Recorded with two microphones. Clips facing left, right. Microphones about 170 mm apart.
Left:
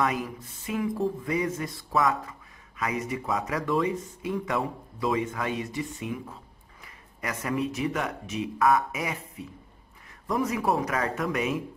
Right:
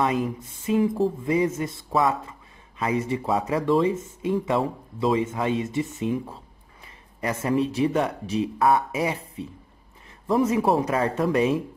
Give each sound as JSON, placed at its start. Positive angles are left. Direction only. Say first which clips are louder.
{"t": 0.0, "sound": "speech", "louder": "right 4 dB", "side_deg": -25}